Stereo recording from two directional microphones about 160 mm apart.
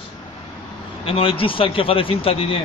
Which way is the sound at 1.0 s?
35° left (ahead or behind).